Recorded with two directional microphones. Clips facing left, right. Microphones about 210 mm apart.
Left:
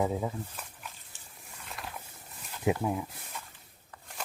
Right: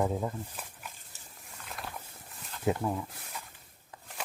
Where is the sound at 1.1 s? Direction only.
40° right (ahead or behind).